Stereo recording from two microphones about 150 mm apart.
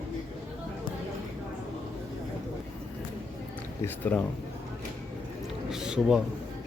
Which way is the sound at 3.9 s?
10° left (ahead or behind).